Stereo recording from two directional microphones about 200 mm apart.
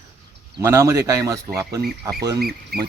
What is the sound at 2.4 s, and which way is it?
Speech, 50° right (ahead or behind).